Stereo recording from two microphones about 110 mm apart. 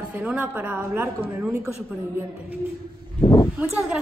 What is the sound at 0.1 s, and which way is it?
A woman's voice, 15° right (ahead or behind).